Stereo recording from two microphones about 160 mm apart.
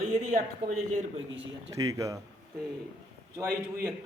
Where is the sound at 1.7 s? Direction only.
20° right (ahead or behind).